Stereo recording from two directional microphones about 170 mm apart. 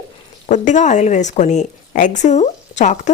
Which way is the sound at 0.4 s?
45° left (ahead or behind).